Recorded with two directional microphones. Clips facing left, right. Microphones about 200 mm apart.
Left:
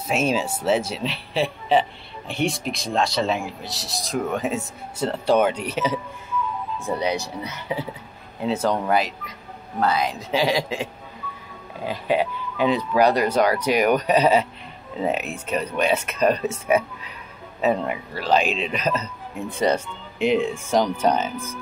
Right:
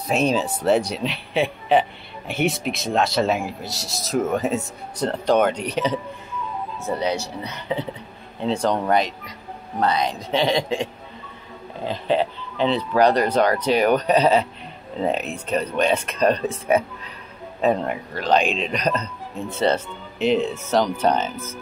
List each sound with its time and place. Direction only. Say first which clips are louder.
0.1 s speech: right 2 dB; 5° left (ahead or behind)
16.4 s speech: right 1 dB; 35° right (ahead or behind)
17.6 s speech: right 1 dB; 5° left (ahead or behind)